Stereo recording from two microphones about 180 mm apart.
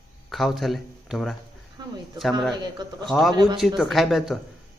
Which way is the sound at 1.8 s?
25° right (ahead or behind).